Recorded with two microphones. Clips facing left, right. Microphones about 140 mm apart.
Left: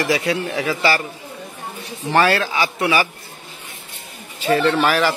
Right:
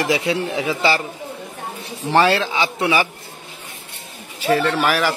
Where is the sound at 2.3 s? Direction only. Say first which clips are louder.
Even; 20° right (ahead or behind).